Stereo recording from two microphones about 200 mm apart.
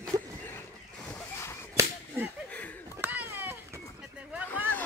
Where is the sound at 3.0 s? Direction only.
10° right (ahead or behind).